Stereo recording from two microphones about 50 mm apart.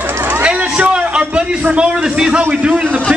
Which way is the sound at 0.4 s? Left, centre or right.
Right.